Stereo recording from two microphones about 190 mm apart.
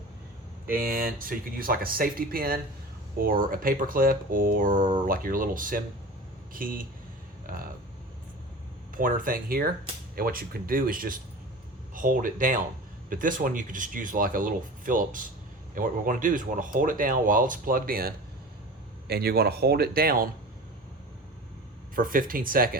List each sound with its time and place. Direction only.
0.7 s speech: 50° right (ahead or behind)
7.4 s a sound: 50° right (ahead or behind)
9.0 s speech: 45° right (ahead or behind)
21.9 s speech: 45° right (ahead or behind)